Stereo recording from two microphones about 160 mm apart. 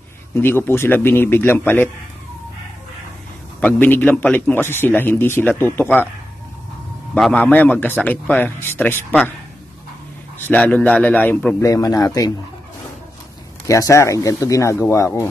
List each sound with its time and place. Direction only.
0.3 s a man's voice: 15° left (ahead or behind)
3.6 s a man's voice: 10° left (ahead or behind)
7.2 s a man's voice: 5° left (ahead or behind)
10.4 s a man's voice: 10° left (ahead or behind)
11.7 s speech: 20° left (ahead or behind)
13.7 s a man's voice: 20° left (ahead or behind)